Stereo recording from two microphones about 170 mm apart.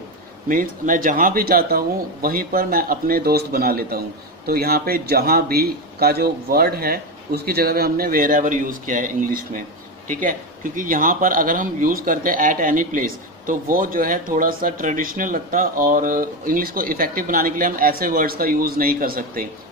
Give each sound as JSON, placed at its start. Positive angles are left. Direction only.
{"t": 0.5, "sound": "a man's voice", "side_deg": -55}